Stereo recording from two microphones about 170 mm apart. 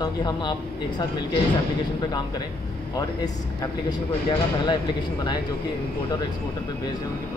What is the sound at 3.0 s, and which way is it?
Speech, 20° left (ahead or behind).